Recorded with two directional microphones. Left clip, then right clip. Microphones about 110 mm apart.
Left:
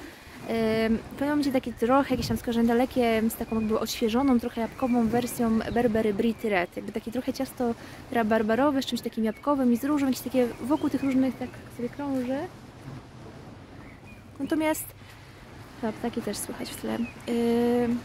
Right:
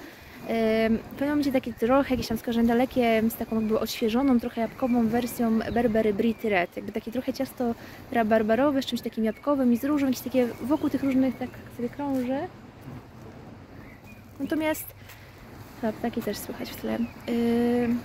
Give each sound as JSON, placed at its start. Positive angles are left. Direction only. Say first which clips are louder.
{"t": 0.5, "sound": "speech", "louder": "right 2 dB", "side_deg": 35}
{"t": 14.5, "sound": "speech", "louder": "left 1 dB", "side_deg": 35}
{"t": 15.8, "sound": "speech", "louder": "right 2 dB", "side_deg": 40}